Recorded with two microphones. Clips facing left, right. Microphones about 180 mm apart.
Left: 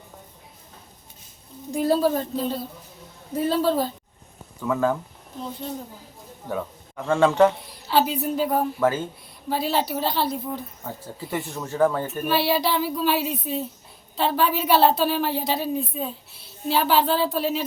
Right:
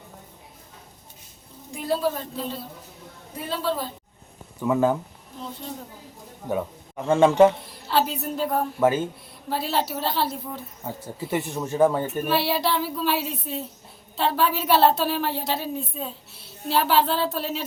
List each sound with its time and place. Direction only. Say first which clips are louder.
1.7 s a woman's voice: left 5 dB; 40° left (ahead or behind)
3.3 s a woman's voice: left 6 dB; 40° left (ahead or behind)
4.6 s speech: right 2 dB; 20° right (ahead or behind)
6.5 s speech: right 2 dB; 20° right (ahead or behind)
7.9 s a woman's voice: left 2 dB; centre (ahead or behind)
8.8 s speech: right 4 dB; 15° right (ahead or behind)
9.5 s a woman's voice: left 2 dB; centre (ahead or behind)
10.8 s speech: right 3 dB; 20° right (ahead or behind)
12.2 s a woman's voice: left 3 dB; centre (ahead or behind)